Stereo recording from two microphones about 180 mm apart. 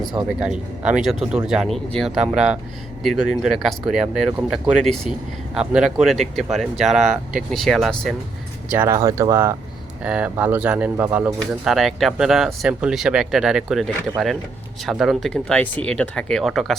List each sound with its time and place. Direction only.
0.3 s speech: 5° right (ahead or behind)
8.7 s speech: 15° right (ahead or behind)